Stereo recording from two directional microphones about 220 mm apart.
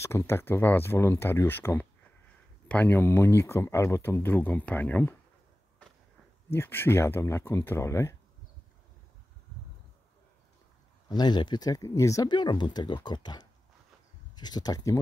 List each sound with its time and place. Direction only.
0.0 s speech: 10° left (ahead or behind)
6.5 s speech: 10° left (ahead or behind)
11.1 s speech: 20° left (ahead or behind)